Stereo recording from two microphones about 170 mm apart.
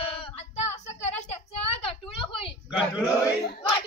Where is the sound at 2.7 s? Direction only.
5° right (ahead or behind).